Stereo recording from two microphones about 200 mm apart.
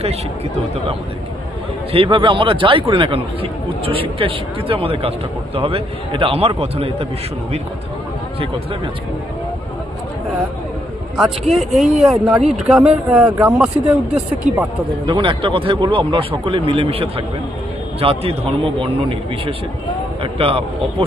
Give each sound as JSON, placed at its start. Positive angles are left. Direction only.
{"t": 1.9, "sound": "a man's voice", "side_deg": -25}
{"t": 11.5, "sound": "speech", "side_deg": 0}
{"t": 15.1, "sound": "a man's voice", "side_deg": -25}